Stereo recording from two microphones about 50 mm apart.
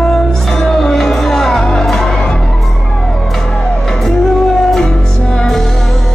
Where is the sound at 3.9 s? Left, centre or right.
Centre.